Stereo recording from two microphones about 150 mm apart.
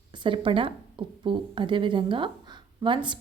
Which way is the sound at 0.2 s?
35° right (ahead or behind).